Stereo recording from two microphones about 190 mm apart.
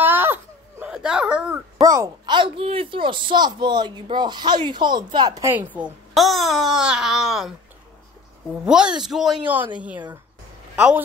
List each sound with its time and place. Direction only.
0.0 s baby cry: 10° right (ahead or behind)
1.8 s a woman's voice: 15° right (ahead or behind); by 7.5 s centre (ahead or behind)
8.6 s speech: 5° right (ahead or behind)